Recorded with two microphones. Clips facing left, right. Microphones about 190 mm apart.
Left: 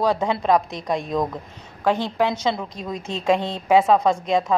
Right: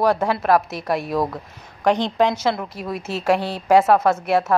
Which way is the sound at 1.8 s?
15° right (ahead or behind).